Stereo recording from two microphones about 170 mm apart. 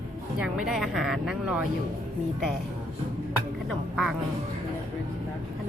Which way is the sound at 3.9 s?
5° right (ahead or behind).